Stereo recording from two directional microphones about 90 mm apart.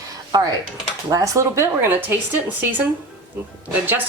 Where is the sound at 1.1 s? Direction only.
35° right (ahead or behind).